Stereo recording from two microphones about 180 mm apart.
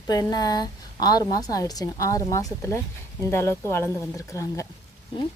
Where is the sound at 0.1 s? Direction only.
20° left (ahead or behind).